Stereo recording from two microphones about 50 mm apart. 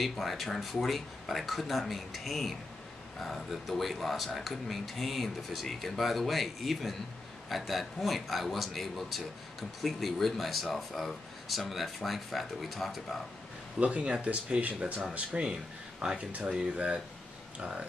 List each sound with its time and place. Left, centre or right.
0.0 s speech: centre
13.7 s speech: right